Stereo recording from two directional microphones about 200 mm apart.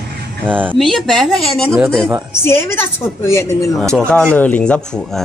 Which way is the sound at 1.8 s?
10° right (ahead or behind).